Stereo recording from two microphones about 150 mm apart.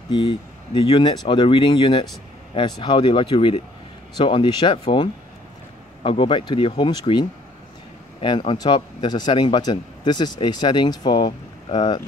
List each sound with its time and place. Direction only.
0.1 s a man's voice: 35° left (ahead or behind)